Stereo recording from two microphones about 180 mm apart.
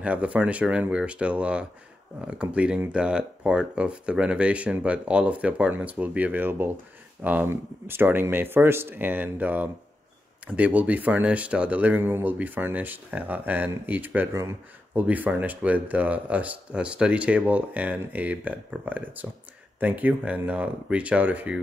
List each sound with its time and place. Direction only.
0.0 s speech: 10° right (ahead or behind)